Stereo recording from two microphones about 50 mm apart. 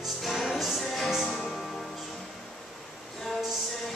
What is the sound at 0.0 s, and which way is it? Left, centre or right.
Music, centre.